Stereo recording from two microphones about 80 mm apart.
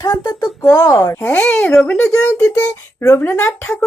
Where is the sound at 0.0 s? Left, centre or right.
Left.